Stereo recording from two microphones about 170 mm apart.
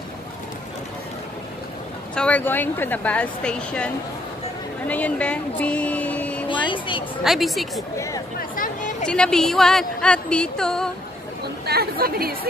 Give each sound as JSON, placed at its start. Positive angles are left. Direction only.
{"t": 2.1, "sound": "speech", "side_deg": 5}
{"t": 8.4, "sound": "a sound", "side_deg": 55}
{"t": 9.0, "sound": "speech", "side_deg": 5}
{"t": 11.4, "sound": "speech", "side_deg": -70}